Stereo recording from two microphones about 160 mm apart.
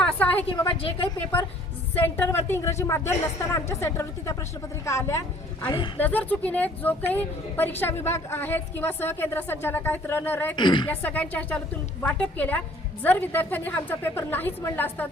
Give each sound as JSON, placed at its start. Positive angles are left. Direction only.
{"t": 0.0, "sound": "a sound", "side_deg": 10}
{"t": 0.8, "sound": "a woman's voice", "side_deg": 35}
{"t": 2.0, "sound": "a woman's voice", "side_deg": 15}
{"t": 10.5, "sound": "a woman's voice", "side_deg": 30}
{"t": 10.8, "sound": "a woman's voice", "side_deg": 10}